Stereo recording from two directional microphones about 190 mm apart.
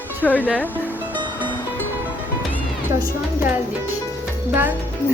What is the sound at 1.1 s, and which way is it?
Music, 25° right (ahead or behind).